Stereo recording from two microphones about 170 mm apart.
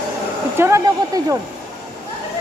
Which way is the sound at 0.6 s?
15° right (ahead or behind).